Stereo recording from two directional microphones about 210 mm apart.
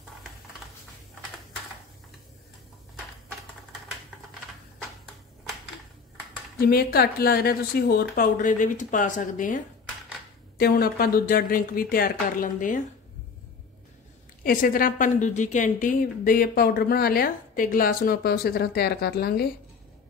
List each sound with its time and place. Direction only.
6.6 s a woman's voice: 45° left (ahead or behind)
10.6 s a woman's voice: 45° left (ahead or behind)
14.4 s a woman's voice: 40° left (ahead or behind)